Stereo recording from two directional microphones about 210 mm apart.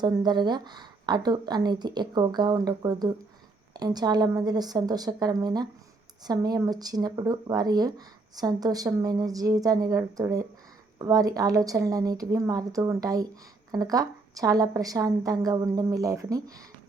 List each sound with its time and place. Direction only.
0.0 s a woman's voice: 20° right (ahead or behind)